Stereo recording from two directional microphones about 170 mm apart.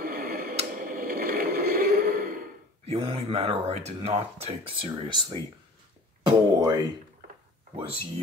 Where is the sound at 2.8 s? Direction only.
35° right (ahead or behind).